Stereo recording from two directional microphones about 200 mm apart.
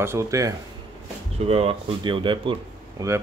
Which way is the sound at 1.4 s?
30° right (ahead or behind).